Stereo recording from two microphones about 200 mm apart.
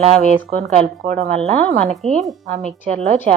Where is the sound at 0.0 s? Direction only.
30° right (ahead or behind).